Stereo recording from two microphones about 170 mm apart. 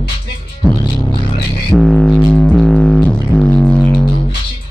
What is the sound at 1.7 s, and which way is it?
Speech, 5° left (ahead or behind).